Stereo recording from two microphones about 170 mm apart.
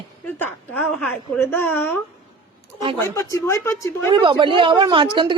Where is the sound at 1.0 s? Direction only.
10° left (ahead or behind).